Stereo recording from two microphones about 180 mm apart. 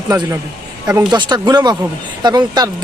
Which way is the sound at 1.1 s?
25° right (ahead or behind).